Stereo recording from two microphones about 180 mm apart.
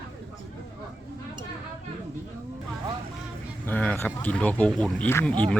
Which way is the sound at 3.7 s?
10° left (ahead or behind).